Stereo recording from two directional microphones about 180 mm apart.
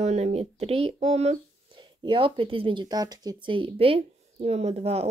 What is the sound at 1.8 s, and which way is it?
Speech, 25° right (ahead or behind).